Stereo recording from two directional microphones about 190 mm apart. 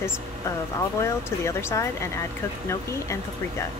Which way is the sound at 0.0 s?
15° left (ahead or behind).